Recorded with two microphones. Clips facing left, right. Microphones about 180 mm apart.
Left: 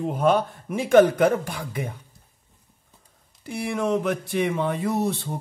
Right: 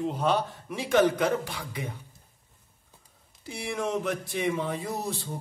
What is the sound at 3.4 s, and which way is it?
A man's voice, 60° left (ahead or behind).